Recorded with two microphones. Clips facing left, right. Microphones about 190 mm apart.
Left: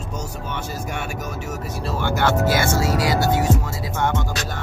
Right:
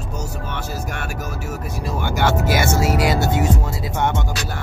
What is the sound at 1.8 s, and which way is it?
Music, 15° right (ahead or behind).